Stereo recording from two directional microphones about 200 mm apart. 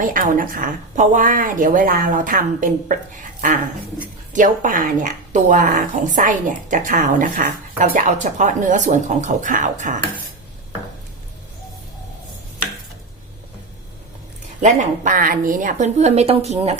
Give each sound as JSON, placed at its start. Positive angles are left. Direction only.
{"t": 0.0, "sound": "speech", "side_deg": -40}
{"t": 4.3, "sound": "speech", "side_deg": -40}
{"t": 14.6, "sound": "speech", "side_deg": -40}